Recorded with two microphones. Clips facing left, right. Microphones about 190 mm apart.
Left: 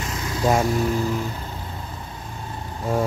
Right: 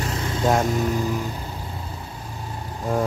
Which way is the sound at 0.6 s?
15° right (ahead or behind).